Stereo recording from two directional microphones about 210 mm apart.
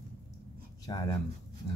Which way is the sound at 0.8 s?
20° left (ahead or behind).